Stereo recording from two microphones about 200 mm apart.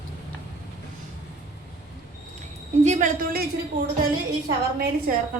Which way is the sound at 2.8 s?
35° right (ahead or behind).